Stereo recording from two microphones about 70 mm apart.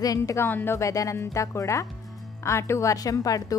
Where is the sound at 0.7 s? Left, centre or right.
Left.